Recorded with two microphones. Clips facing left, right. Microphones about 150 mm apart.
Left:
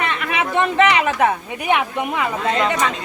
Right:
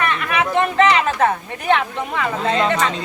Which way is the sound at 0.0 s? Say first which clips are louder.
Right 2 dB; 20° left (ahead or behind).